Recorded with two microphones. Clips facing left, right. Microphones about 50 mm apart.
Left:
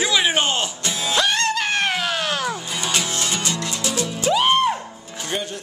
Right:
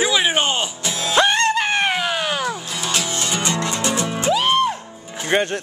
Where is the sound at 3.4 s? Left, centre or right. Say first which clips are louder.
Right 4 dB; right.